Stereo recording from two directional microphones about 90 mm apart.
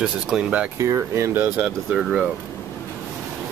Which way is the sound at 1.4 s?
10° right (ahead or behind).